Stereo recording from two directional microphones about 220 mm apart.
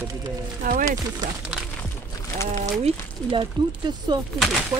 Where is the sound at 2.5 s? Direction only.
25° right (ahead or behind).